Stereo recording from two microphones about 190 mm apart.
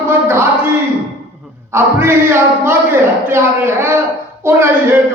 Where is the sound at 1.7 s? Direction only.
10° right (ahead or behind).